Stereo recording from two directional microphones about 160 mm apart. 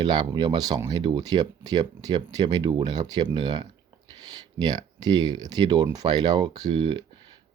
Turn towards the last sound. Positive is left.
turn(degrees=-30)  # may be behind; listen again after turning